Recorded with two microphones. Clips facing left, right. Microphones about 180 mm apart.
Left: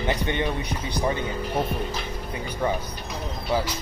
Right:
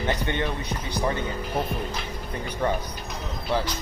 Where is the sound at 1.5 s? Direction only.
Centre (ahead or behind).